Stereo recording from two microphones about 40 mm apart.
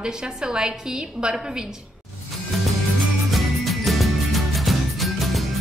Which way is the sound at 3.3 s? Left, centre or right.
Centre.